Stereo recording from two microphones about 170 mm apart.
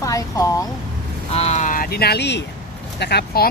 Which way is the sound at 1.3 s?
40° left (ahead or behind).